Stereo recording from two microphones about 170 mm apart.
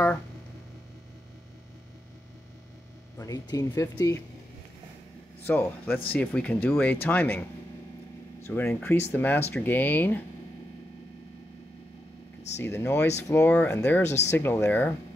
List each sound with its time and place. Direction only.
3.2 s speech: 20° left (ahead or behind)
5.4 s speech: 10° left (ahead or behind)
12.6 s speech: 10° left (ahead or behind)